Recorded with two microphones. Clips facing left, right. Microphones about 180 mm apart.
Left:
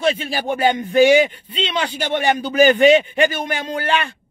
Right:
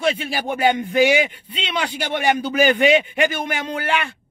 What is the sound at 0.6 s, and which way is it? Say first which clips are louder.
A man's voice: left 2 dB; 10° right (ahead or behind).